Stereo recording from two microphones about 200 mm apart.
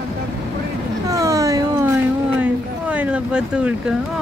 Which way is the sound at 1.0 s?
15° right (ahead or behind).